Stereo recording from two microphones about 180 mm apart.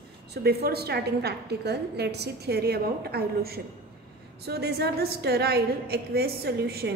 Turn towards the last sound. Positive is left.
turn(degrees=-65)  # may be behind; listen again after turning